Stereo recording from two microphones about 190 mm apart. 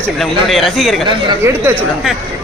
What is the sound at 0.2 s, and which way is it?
Speech, centre (ahead or behind).